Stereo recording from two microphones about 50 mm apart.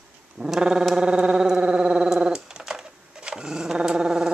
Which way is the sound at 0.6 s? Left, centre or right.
Centre.